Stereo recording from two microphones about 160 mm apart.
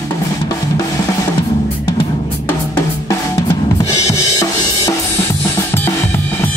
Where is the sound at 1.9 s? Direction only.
30° left (ahead or behind).